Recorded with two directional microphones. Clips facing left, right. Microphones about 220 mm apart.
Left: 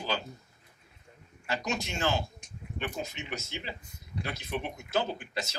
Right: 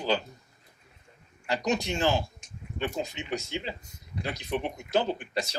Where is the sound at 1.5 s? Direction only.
15° right (ahead or behind).